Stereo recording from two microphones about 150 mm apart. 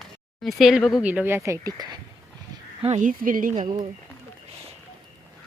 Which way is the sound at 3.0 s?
65° right (ahead or behind).